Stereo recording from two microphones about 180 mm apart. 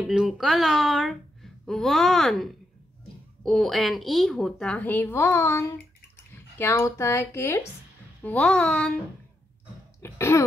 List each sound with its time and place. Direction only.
0.1 s speech: centre (ahead or behind)
10.0 s speech: 15° left (ahead or behind)